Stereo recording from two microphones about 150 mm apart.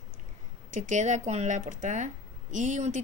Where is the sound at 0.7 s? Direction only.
55° right (ahead or behind).